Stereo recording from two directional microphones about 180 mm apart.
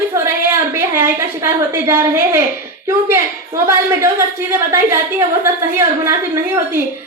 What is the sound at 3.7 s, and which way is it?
Speech, 15° right (ahead or behind).